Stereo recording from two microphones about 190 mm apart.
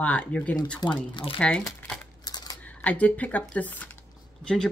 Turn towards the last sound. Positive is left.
turn(degrees=5)  # may be behind; listen again after turning